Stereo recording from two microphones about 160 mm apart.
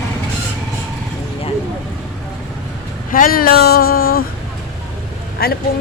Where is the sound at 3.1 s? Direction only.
65° left (ahead or behind).